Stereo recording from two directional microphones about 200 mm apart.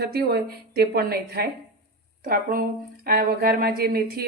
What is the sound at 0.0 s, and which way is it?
Speech, 55° right (ahead or behind).